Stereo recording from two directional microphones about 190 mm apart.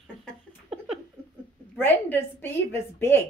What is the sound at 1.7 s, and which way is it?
A woman's voice, 10° left (ahead or behind).